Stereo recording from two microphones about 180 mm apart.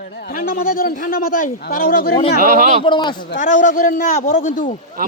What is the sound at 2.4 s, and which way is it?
Speech, 50° right (ahead or behind).